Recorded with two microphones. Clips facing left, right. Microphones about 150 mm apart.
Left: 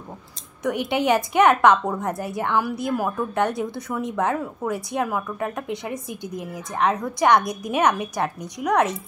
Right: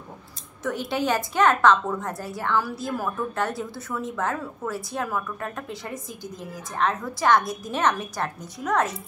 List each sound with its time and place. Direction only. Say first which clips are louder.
0.7 s a woman's voice: left 4 dB; 20° left (ahead or behind)